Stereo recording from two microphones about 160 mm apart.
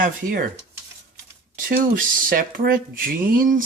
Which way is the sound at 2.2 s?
65° right (ahead or behind).